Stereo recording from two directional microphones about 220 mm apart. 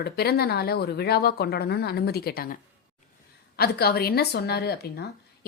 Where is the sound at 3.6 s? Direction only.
45° left (ahead or behind).